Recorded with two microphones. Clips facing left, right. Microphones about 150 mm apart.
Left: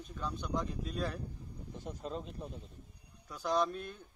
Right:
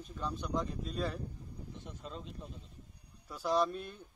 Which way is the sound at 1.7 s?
40° left (ahead or behind).